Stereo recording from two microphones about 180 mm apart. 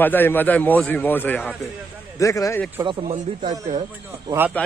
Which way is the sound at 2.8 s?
30° right (ahead or behind).